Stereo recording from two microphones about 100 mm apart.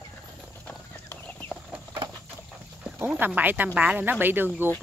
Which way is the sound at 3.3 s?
15° right (ahead or behind).